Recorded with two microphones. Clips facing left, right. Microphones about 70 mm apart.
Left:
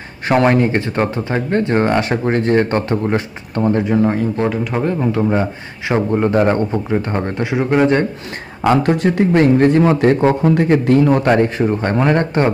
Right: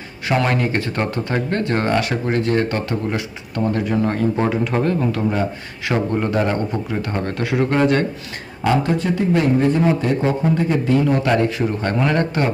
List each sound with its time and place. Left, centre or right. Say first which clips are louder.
0.3 s speech: left 6 dB; left
4.4 s speech: left 1 dB; centre
4.8 s speech: left 3 dB; left
8.6 s speech: left 4 dB; left
11.2 s speech: left 4 dB; left